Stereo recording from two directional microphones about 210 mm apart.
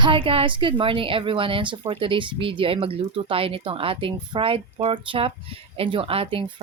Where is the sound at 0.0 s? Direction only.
25° right (ahead or behind).